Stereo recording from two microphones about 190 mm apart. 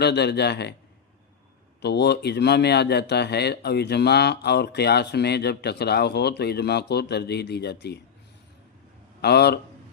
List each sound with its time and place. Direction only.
0.0 s speech: 60° left (ahead or behind)
1.8 s speech: 60° left (ahead or behind)
9.2 s speech: 60° left (ahead or behind)